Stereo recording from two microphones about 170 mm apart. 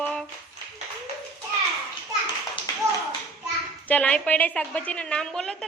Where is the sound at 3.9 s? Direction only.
5° left (ahead or behind).